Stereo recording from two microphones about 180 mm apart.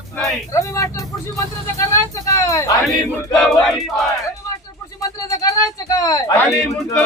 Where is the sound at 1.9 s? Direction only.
15° left (ahead or behind).